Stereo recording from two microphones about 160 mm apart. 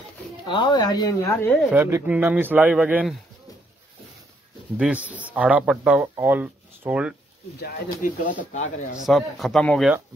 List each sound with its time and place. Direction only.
0.5 s speech: 30° left (ahead or behind)
1.7 s speech: 15° right (ahead or behind)
4.7 s speech: 5° right (ahead or behind)
7.6 s speech: 55° left (ahead or behind)
9.0 s speech: centre (ahead or behind)